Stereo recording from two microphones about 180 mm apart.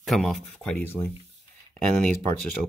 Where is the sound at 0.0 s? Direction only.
Centre (ahead or behind).